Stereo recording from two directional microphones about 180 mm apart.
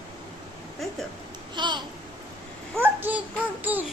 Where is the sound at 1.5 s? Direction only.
25° right (ahead or behind).